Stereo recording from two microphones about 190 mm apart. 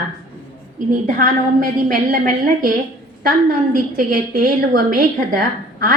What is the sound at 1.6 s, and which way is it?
A woman's voice, 45° right (ahead or behind).